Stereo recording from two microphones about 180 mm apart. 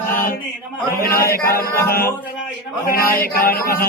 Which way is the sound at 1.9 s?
50° left (ahead or behind).